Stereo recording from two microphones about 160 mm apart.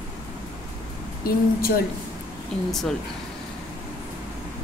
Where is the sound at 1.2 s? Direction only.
70° left (ahead or behind).